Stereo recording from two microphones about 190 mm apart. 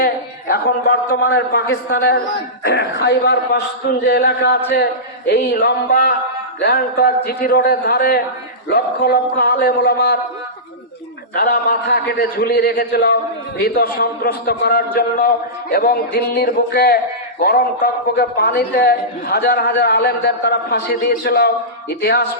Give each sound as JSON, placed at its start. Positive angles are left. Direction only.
{"t": 0.0, "sound": "a sound", "side_deg": 50}
{"t": 1.2, "sound": "a man's voice", "side_deg": 60}
{"t": 11.3, "sound": "a man's voice", "side_deg": 55}